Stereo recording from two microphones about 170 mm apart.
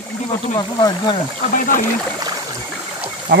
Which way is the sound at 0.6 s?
25° left (ahead or behind).